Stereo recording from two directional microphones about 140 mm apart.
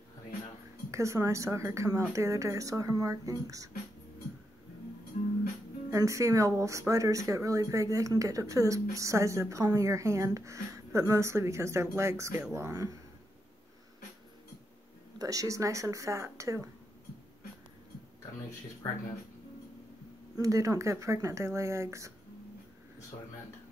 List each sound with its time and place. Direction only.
0.9 s speech: 20° right (ahead or behind)
5.9 s speech: 20° right (ahead or behind)
15.1 s speech: 25° right (ahead or behind)
20.3 s speech: 25° right (ahead or behind)